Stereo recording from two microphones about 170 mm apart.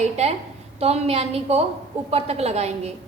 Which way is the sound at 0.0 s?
40° right (ahead or behind).